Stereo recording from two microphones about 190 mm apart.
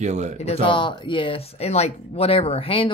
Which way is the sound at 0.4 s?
30° left (ahead or behind).